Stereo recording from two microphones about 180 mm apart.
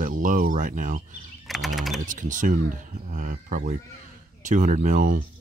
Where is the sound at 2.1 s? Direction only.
45° right (ahead or behind).